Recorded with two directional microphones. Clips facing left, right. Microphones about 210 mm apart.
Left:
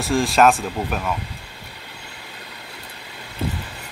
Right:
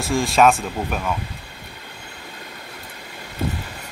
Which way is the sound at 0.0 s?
Centre (ahead or behind).